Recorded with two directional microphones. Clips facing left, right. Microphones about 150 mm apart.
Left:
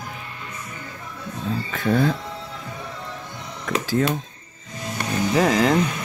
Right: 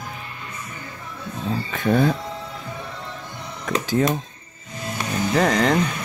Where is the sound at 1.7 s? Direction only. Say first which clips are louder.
Right 1 dB; 20° right (ahead or behind).